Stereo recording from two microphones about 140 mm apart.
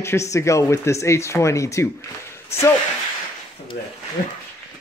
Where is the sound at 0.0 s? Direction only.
20° left (ahead or behind).